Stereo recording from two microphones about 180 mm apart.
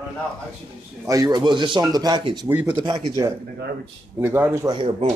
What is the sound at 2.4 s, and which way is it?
Speech, 10° right (ahead or behind).